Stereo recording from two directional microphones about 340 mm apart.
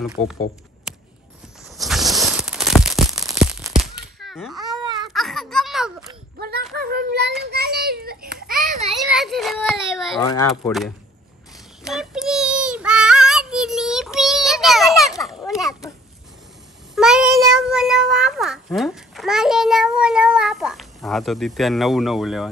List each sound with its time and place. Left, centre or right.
0.0 s speech: centre
0.9 s music: centre
1.8 s a sound: centre
6.7 s child singing: right
8.8 s children playing: centre
10.2 s speech: centre
11.8 s child singing: centre
15.1 s a sound: centre
16.9 s speech: centre